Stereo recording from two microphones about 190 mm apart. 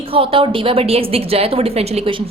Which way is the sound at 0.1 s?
30° right (ahead or behind).